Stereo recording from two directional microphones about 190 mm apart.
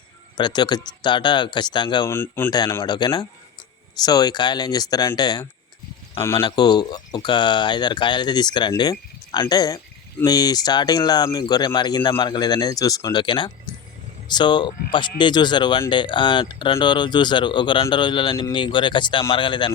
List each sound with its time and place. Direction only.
0.3 s speech: 25° left (ahead or behind)
2.1 s speech: 10° left (ahead or behind)